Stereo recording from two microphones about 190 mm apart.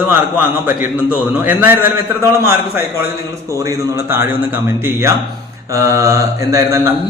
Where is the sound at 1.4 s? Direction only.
10° right (ahead or behind).